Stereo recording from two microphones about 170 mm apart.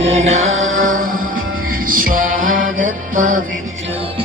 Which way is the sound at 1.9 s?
55° right (ahead or behind).